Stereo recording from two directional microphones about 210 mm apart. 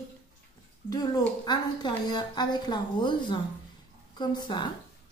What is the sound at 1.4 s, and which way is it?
A woman's voice, 20° left (ahead or behind).